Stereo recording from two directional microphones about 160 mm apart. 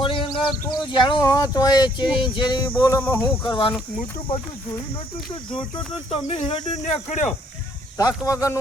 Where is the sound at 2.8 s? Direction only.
15° left (ahead or behind).